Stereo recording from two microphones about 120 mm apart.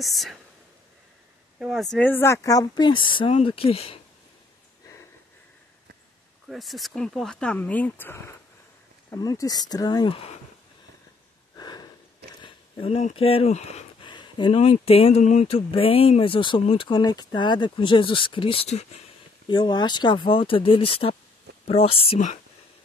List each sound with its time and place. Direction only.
0.0 s speech: centre (ahead or behind)
1.7 s speech: centre (ahead or behind)
2.0 s speech: 20° left (ahead or behind); by 3.3 s 45° left (ahead or behind)
3.3 s speech: 55° left (ahead or behind)
6.4 s speech: centre (ahead or behind); by 8.2 s 15° left (ahead or behind)
9.1 s speech: 30° left (ahead or behind)
11.5 s snort: 35° left (ahead or behind)
12.8 s speech: 55° left (ahead or behind)
14.0 s a sound: 40° left (ahead or behind)
14.6 s speech: 55° left (ahead or behind)
19.5 s speech: 40° left (ahead or behind)